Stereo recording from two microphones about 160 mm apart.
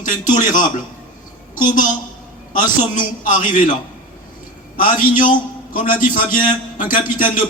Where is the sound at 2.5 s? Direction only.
55° left (ahead or behind).